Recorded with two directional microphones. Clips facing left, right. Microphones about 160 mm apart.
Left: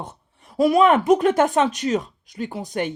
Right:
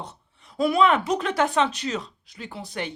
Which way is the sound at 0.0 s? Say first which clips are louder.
Left 3 dB; 45° left (ahead or behind).